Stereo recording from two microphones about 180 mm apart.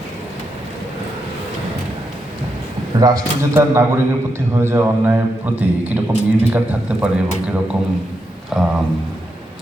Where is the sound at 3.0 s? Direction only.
20° right (ahead or behind).